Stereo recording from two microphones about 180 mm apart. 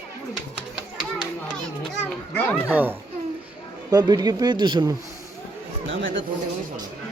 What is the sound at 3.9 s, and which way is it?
Speech, 20° right (ahead or behind).